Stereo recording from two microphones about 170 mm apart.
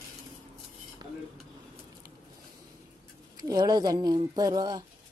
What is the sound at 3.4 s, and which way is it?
Speech, 25° right (ahead or behind).